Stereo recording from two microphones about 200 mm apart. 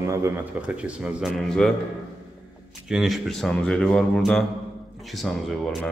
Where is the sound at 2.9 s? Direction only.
Centre (ahead or behind).